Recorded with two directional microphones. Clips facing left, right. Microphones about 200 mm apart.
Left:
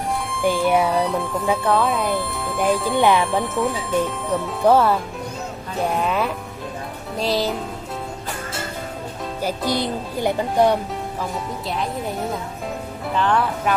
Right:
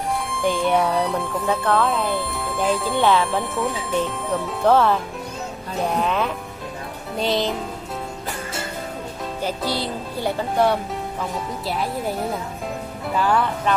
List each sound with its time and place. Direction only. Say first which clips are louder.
0.3 s speech: left 2 dB; centre (ahead or behind)
3.0 s speech: left 1 dB; 15° left (ahead or behind)
3.3 s speech: left 2 dB; centre (ahead or behind)
4.6 s speech: left 1 dB; 10° left (ahead or behind)
9.7 s speech: left 3 dB; 15° left (ahead or behind)
13.1 s speech: even; 5° right (ahead or behind)